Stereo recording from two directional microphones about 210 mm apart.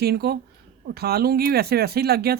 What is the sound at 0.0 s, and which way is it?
Speech, 50° right (ahead or behind).